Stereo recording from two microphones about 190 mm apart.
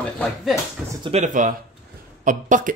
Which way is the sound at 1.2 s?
45° right (ahead or behind).